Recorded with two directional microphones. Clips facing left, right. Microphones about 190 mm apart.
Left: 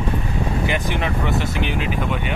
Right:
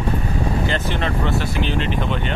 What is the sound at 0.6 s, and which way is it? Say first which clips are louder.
Speech: even; 15° left (ahead or behind).